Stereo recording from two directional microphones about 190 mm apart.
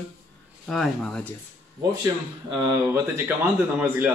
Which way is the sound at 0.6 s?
Centre (ahead or behind).